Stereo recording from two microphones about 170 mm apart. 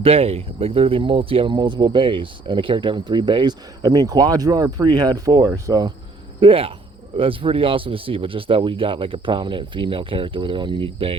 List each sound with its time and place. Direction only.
0.0 s speech: 35° right (ahead or behind)
6.4 s speech: 35° right (ahead or behind)